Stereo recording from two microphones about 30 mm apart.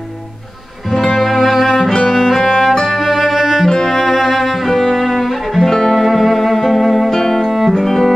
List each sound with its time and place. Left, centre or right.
0.9 s music: centre
3.0 s music: centre
3.6 s cello: centre
3.9 s cello: centre
6.0 s music: centre
7.1 s music: centre
7.4 s music: centre
7.7 s music: centre